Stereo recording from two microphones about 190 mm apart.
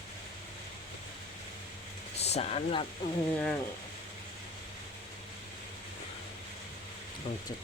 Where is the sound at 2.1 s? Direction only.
35° left (ahead or behind).